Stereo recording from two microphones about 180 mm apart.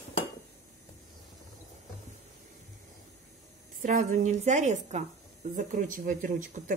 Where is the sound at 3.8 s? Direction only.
45° right (ahead or behind).